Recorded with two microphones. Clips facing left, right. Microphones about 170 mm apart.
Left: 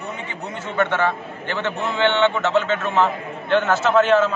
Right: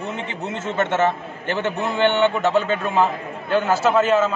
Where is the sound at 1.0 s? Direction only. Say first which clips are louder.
Right 2 dB; 20° right (ahead or behind).